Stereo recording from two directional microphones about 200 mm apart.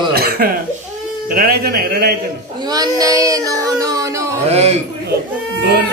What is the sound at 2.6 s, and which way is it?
Child singing, 20° right (ahead or behind).